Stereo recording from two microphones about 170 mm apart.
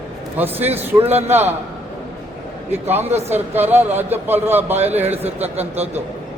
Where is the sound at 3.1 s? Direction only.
40° right (ahead or behind).